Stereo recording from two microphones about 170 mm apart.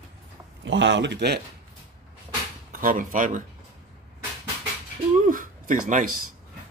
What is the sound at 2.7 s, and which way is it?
Speech, 55° right (ahead or behind).